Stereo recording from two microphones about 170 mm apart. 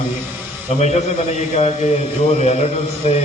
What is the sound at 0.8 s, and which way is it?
A man's voice, 45° left (ahead or behind).